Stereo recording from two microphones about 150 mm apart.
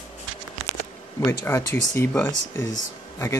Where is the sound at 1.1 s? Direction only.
15° left (ahead or behind).